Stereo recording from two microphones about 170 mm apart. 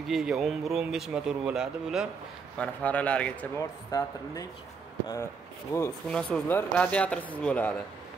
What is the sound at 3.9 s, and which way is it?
Speech, 20° left (ahead or behind).